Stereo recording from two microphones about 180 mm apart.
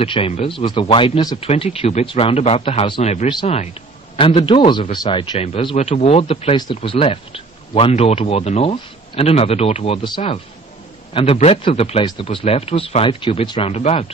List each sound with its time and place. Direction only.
0.0 s a man's voice: 30° left (ahead or behind)
10.0 s a man's voice: 25° left (ahead or behind)